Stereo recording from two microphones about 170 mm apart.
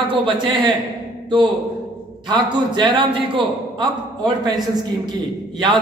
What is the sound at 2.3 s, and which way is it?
A man's voice, 30° right (ahead or behind).